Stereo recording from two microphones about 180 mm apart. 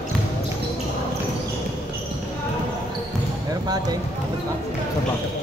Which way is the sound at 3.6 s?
20° right (ahead or behind).